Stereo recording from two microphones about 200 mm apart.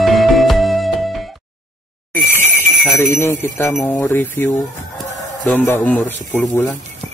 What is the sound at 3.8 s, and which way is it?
A man's voice, 10° left (ahead or behind).